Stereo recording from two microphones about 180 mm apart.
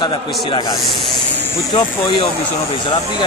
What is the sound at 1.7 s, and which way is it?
Speech, 30° left (ahead or behind).